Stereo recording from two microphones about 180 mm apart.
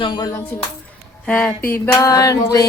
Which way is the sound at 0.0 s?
25° left (ahead or behind).